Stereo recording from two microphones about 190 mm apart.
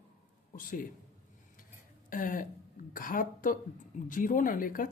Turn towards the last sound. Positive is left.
turn(degrees=45)  # may be behind; listen again after turning